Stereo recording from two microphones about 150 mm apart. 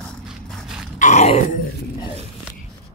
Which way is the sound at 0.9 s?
55° left (ahead or behind).